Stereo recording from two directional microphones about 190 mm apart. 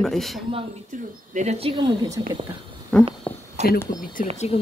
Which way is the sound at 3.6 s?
35° right (ahead or behind).